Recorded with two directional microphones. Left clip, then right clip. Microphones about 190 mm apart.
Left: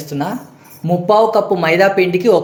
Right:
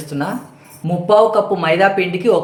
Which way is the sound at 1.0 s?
20° left (ahead or behind).